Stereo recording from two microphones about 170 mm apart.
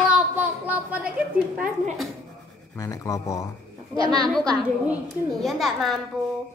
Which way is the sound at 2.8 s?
20° left (ahead or behind).